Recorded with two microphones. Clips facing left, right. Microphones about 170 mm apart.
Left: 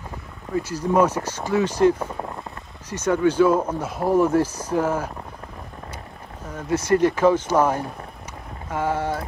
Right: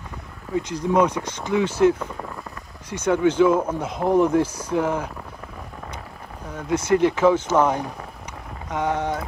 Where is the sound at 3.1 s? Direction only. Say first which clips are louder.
Even; 10° left (ahead or behind).